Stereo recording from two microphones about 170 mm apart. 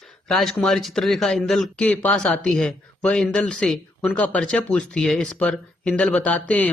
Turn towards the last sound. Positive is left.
turn(degrees=10)  # may be behind; listen again after turning